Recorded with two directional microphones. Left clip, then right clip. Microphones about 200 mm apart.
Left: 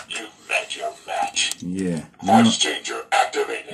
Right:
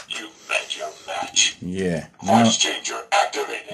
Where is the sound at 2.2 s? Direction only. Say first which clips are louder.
Left 1 dB; centre (ahead or behind).